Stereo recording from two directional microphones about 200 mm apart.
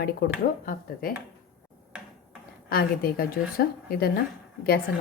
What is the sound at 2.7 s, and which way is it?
Speech, 50° left (ahead or behind).